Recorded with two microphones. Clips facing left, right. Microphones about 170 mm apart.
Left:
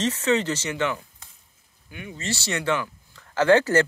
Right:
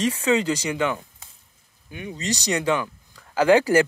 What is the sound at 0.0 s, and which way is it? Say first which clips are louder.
Speech: right 2 dB; 10° right (ahead or behind).